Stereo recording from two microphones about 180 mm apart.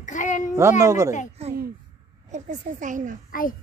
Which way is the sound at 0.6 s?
15° right (ahead or behind).